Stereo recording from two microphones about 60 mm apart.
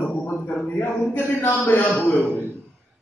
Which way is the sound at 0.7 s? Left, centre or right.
Left.